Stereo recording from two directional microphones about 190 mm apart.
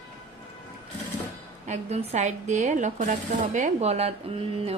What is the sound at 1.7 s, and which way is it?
A woman's voice, 35° right (ahead or behind).